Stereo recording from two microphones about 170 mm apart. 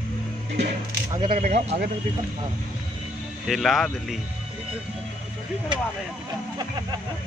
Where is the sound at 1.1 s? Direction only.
25° right (ahead or behind).